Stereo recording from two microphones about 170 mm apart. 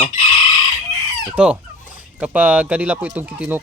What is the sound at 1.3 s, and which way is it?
Fowl, 5° right (ahead or behind).